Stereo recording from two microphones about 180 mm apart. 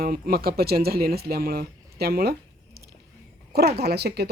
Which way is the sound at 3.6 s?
60° right (ahead or behind).